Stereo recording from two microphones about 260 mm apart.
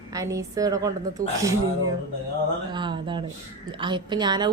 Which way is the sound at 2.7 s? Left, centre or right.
Centre.